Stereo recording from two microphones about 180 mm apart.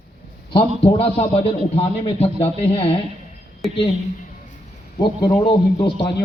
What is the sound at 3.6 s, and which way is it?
Speech, centre (ahead or behind).